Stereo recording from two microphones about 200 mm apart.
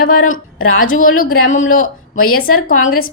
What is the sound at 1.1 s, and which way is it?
A woman's voice, 45° left (ahead or behind).